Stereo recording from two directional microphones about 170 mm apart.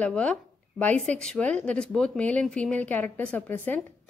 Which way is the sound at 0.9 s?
45° right (ahead or behind).